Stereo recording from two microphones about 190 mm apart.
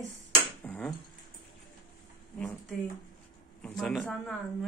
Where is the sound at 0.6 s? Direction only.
10° left (ahead or behind).